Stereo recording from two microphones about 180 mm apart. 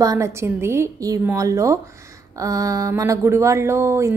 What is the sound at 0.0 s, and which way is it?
A woman's voice, 15° right (ahead or behind).